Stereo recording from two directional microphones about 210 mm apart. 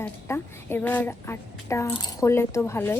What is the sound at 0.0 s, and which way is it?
A woman's voice, 10° left (ahead or behind).